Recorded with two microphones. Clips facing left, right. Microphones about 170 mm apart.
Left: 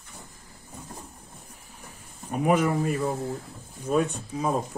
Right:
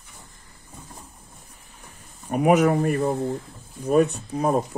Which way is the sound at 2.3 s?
70° right (ahead or behind).